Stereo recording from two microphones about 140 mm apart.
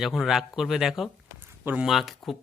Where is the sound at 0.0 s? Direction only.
Centre (ahead or behind).